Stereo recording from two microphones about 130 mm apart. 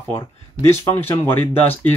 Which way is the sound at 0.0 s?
25° left (ahead or behind).